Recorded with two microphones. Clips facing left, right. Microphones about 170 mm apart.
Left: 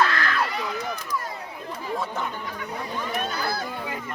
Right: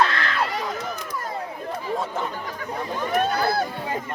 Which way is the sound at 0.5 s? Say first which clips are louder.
Right 2 dB; 45° right (ahead or behind).